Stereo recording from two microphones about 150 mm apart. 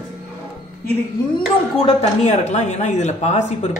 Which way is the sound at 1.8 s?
40° left (ahead or behind).